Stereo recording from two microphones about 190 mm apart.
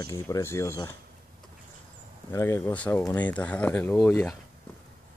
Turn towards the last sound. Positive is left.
turn(degrees=5)  # may be behind; listen again after turning